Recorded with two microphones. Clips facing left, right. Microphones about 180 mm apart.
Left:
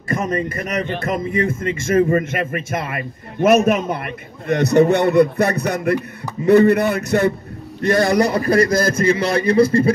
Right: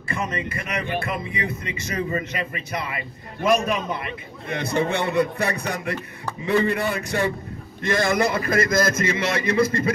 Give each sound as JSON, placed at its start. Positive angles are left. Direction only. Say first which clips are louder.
{"t": 0.1, "sound": "a man's voice", "louder": "left 7 dB", "side_deg": 40}